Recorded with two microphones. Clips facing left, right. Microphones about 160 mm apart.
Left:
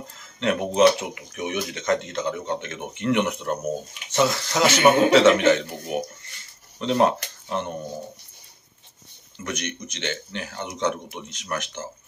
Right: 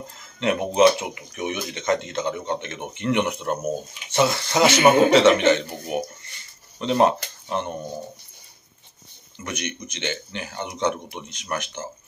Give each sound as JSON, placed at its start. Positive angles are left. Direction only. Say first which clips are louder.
{"t": 0.4, "sound": "speech", "louder": "right 1 dB", "side_deg": -5}
{"t": 9.4, "sound": "speech", "louder": "even", "side_deg": -5}